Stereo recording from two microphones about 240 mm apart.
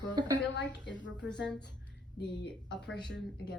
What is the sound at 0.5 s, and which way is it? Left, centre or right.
Speech, left.